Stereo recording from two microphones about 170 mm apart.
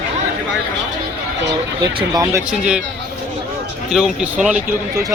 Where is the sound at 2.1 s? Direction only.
20° right (ahead or behind).